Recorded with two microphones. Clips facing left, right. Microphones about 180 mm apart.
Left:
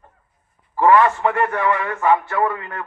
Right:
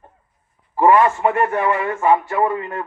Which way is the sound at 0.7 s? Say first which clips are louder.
Right 1 dB; 20° right (ahead or behind).